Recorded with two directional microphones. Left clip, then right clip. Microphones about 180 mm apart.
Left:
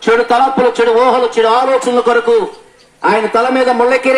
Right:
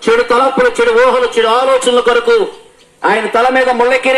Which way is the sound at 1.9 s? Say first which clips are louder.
Right 1 dB; 70° left (ahead or behind).